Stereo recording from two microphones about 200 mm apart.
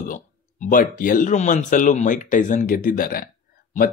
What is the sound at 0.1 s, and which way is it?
Speech, 45° left (ahead or behind).